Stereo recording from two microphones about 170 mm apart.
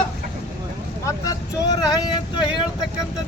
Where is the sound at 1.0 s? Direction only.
20° left (ahead or behind).